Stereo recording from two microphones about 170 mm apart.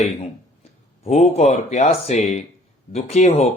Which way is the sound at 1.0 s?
40° left (ahead or behind).